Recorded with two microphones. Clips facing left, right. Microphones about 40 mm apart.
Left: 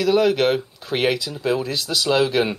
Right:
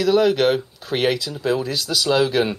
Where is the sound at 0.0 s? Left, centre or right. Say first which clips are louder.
Right 1 dB; centre.